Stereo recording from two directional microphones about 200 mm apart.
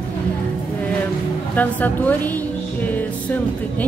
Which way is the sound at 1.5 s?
10° left (ahead or behind).